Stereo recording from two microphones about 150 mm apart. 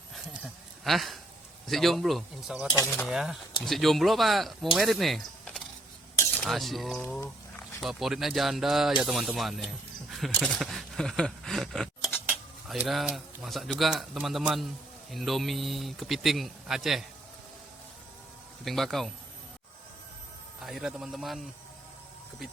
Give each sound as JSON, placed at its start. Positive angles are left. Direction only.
{"t": 0.1, "sound": "a sound", "side_deg": 0}
{"t": 1.6, "sound": "speech", "side_deg": 0}
{"t": 10.1, "sound": "a sound", "side_deg": 0}
{"t": 12.3, "sound": "speech", "side_deg": -5}
{"t": 18.6, "sound": "speech", "side_deg": 0}
{"t": 20.7, "sound": "speech", "side_deg": -5}